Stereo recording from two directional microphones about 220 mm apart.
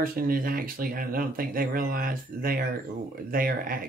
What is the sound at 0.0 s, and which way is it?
Speech, 40° right (ahead or behind).